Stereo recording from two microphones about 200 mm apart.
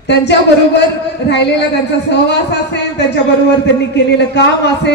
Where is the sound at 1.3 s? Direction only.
60° left (ahead or behind).